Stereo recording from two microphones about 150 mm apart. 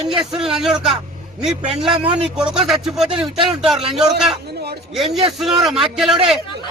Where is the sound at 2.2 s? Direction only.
5° right (ahead or behind).